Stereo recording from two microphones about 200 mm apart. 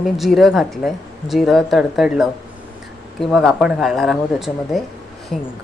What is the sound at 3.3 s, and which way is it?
A woman's voice, centre (ahead or behind).